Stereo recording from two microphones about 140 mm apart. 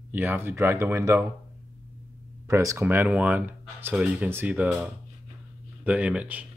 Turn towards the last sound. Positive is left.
turn(degrees=-10)  # may be behind; listen again after turning